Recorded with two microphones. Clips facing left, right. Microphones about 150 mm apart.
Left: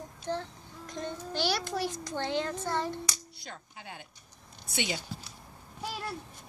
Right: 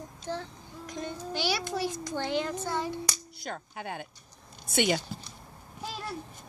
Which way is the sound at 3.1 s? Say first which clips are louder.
Right 6 dB; 55° right (ahead or behind).